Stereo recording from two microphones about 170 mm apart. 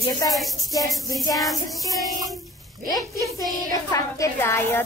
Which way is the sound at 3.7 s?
20° left (ahead or behind).